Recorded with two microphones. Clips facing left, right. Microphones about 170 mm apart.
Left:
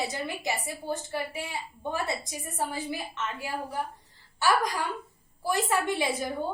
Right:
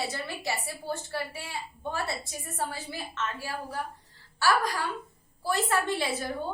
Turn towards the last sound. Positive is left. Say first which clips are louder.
# left 1 dB
turn(degrees=15)  # may be behind; listen again after turning